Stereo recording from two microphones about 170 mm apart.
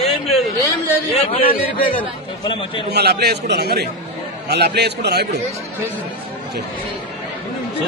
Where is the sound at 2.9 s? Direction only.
70° right (ahead or behind).